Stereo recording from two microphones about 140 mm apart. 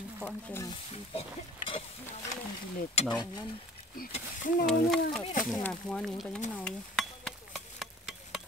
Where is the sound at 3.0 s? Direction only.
50° left (ahead or behind).